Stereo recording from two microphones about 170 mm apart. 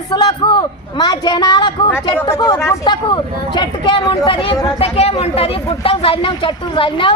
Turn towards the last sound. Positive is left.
turn(degrees=30)  # may be behind; listen again after turning